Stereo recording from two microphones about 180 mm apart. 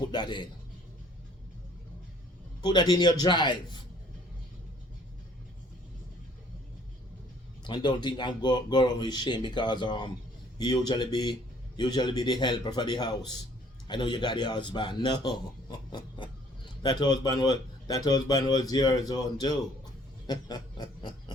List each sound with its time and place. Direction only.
0.1 s a man's voice: 25° left (ahead or behind)
2.6 s speech: 25° left (ahead or behind)
7.6 s speech: 25° left (ahead or behind)
20.2 s snicker: 25° left (ahead or behind)